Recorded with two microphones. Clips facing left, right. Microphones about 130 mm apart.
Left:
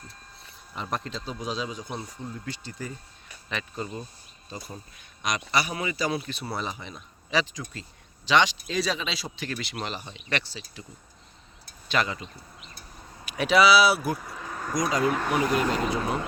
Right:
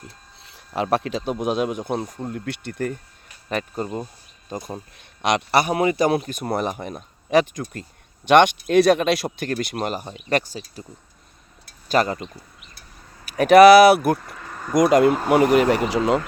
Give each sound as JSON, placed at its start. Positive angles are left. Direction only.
{"t": 0.4, "sound": "speech", "side_deg": -80}
{"t": 3.5, "sound": "a man's voice", "side_deg": -45}
{"t": 5.2, "sound": "a man's voice", "side_deg": -70}
{"t": 11.9, "sound": "a man's voice", "side_deg": -45}
{"t": 13.2, "sound": "a man's voice", "side_deg": -45}
{"t": 14.2, "sound": "vehicle", "side_deg": 5}
{"t": 14.8, "sound": "speech", "side_deg": -60}